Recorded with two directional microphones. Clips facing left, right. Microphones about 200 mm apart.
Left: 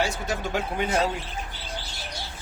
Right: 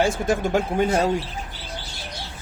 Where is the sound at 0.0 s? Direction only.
50° right (ahead or behind).